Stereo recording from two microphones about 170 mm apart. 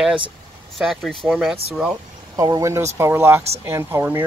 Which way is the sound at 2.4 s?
20° right (ahead or behind).